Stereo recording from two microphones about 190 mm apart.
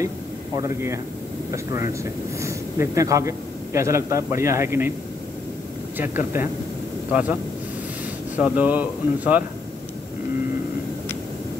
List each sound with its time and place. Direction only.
0.6 s a man's voice: 15° right (ahead or behind)
5.9 s speech: 10° right (ahead or behind)
8.4 s speech: 5° right (ahead or behind)